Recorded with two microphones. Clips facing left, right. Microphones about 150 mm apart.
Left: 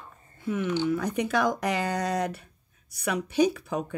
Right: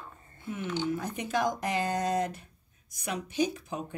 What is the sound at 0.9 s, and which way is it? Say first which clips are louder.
Speech: left 5 dB; 75° left (ahead or behind).